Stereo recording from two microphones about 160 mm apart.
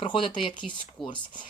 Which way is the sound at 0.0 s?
30° left (ahead or behind).